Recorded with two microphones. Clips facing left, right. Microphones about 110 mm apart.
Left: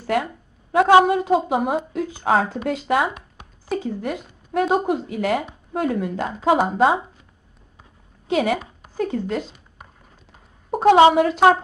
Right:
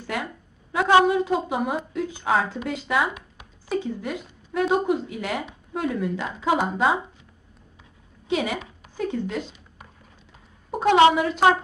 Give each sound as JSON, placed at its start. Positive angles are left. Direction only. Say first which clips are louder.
{"t": 0.0, "sound": "a woman's voice", "louder": "left 8 dB", "side_deg": 50}
{"t": 8.3, "sound": "a woman's voice", "louder": "left 5 dB", "side_deg": 50}
{"t": 10.7, "sound": "a sound", "louder": "left 5 dB", "side_deg": 45}
{"t": 11.1, "sound": "speech", "louder": "left 4 dB", "side_deg": 50}